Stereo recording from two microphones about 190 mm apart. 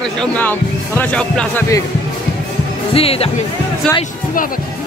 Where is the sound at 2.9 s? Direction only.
30° left (ahead or behind).